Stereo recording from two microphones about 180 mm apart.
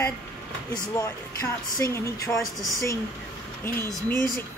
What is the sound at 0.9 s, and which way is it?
Speech, 15° left (ahead or behind).